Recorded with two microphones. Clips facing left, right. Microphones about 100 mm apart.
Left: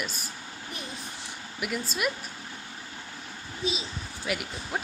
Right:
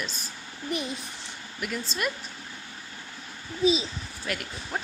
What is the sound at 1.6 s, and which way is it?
Speech, 10° left (ahead or behind).